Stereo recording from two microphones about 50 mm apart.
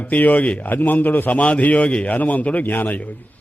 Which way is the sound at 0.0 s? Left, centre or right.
Left.